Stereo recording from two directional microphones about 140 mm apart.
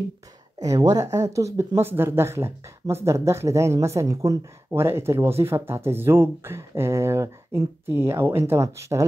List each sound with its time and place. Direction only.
0.6 s speech: 25° right (ahead or behind)